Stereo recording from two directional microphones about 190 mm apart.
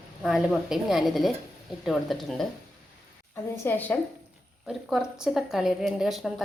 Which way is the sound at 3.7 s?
10° left (ahead or behind).